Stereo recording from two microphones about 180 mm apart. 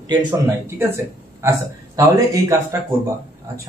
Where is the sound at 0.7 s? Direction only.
15° right (ahead or behind).